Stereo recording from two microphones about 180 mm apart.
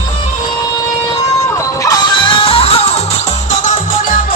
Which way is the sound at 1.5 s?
20° left (ahead or behind).